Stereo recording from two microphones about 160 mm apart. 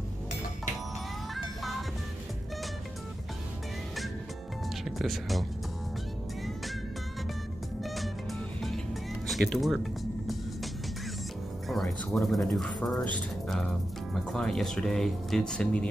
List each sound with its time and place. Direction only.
1.3 s music: centre (ahead or behind)
4.8 s speech: centre (ahead or behind)
7.8 s music: centre (ahead or behind)
9.3 s speech: centre (ahead or behind)
11.7 s speech: centre (ahead or behind)